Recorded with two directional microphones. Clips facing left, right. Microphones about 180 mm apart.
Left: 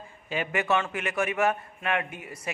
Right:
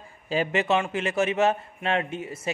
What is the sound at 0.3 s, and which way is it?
A man's voice, 30° right (ahead or behind).